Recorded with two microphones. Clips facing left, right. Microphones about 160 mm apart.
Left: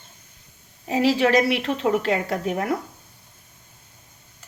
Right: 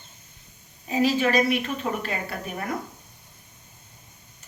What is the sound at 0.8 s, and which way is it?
Speech, 75° left (ahead or behind).